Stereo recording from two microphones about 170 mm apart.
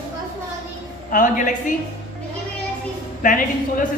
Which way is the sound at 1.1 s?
50° left (ahead or behind).